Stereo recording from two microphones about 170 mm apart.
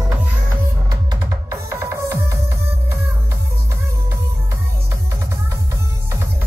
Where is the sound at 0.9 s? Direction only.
20° right (ahead or behind).